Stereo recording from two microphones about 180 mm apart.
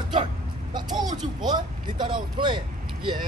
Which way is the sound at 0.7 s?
25° right (ahead or behind).